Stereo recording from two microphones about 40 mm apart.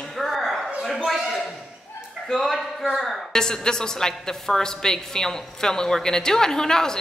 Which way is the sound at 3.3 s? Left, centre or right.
Centre.